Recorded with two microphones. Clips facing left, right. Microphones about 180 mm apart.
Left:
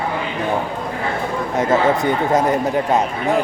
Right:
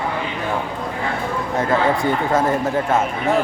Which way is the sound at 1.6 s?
20° left (ahead or behind).